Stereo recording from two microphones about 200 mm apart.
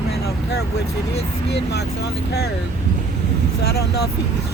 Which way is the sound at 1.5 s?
55° left (ahead or behind).